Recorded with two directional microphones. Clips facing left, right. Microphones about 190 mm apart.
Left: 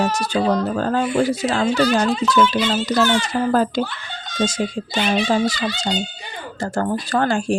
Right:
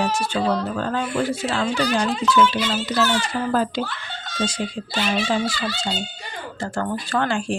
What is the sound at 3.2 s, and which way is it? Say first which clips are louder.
Speech: left 4 dB; 45° left (ahead or behind).